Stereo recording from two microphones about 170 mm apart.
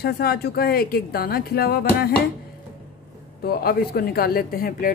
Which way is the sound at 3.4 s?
65° left (ahead or behind).